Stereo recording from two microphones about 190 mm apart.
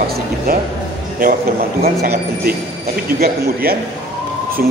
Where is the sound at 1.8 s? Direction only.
55° right (ahead or behind).